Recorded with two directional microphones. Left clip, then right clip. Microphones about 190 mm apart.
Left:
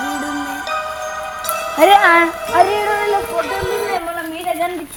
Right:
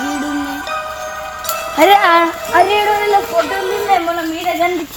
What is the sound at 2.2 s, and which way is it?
Music, centre (ahead or behind).